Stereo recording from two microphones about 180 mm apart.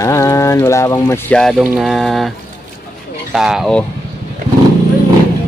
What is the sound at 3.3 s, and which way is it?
Speech, centre (ahead or behind).